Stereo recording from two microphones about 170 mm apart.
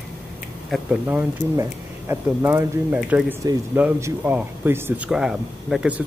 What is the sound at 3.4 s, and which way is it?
Speech, 20° right (ahead or behind).